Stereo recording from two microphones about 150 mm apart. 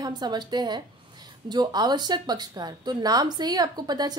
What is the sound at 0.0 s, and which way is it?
Speech, 30° right (ahead or behind).